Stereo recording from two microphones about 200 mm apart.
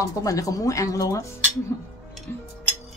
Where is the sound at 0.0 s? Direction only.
15° left (ahead or behind).